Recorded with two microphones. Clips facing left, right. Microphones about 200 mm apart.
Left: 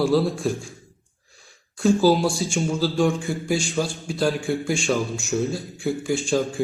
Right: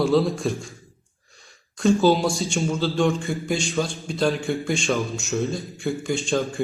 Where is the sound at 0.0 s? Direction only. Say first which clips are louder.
Even; centre (ahead or behind).